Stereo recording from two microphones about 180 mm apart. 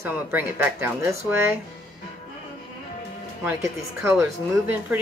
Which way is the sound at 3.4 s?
15° right (ahead or behind).